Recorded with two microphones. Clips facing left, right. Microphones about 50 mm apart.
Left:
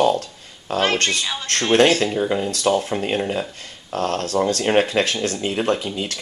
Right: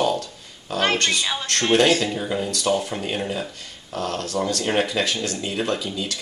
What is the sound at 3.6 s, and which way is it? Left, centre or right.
Speech, left.